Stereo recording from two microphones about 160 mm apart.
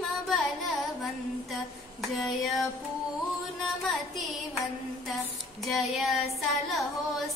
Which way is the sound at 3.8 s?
Centre (ahead or behind).